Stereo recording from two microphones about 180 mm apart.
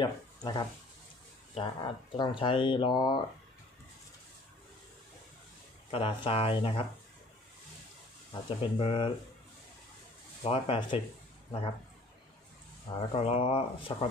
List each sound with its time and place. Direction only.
0.0 s speech: 25° left (ahead or behind)
5.9 s speech: 30° left (ahead or behind)
8.3 s speech: 30° left (ahead or behind)
10.4 s speech: 30° left (ahead or behind)
12.9 s speech: 30° left (ahead or behind)